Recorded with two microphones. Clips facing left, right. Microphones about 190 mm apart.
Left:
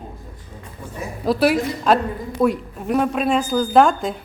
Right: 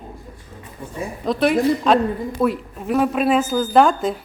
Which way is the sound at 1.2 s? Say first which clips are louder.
Right 1 dB; 5° left (ahead or behind).